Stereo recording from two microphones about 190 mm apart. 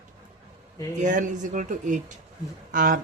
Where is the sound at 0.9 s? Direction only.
40° right (ahead or behind).